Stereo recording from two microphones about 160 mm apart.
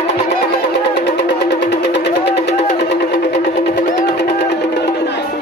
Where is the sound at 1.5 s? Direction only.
90° left.